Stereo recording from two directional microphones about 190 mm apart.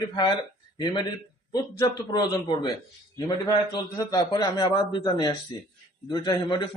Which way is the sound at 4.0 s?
20° left (ahead or behind).